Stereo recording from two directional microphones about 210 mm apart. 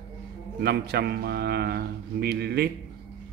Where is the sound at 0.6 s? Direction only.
50° right (ahead or behind).